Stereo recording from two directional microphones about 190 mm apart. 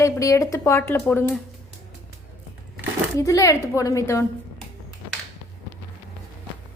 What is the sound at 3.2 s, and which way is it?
Speech, 15° left (ahead or behind).